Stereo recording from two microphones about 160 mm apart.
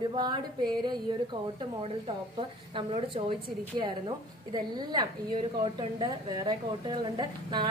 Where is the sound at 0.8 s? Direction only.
30° right (ahead or behind).